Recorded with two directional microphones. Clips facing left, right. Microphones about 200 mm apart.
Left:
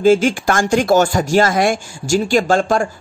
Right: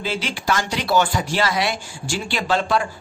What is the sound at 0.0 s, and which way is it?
Speech, 45° left (ahead or behind).